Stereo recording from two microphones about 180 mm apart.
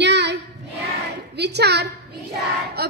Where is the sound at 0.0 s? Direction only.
75° right (ahead or behind).